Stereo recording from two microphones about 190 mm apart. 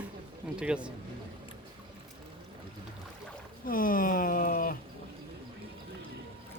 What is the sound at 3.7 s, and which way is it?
Speech, 45° left (ahead or behind).